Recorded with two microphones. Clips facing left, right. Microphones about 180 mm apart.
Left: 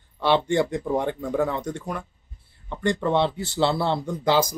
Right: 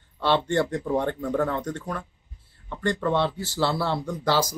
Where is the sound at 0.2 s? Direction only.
15° left (ahead or behind).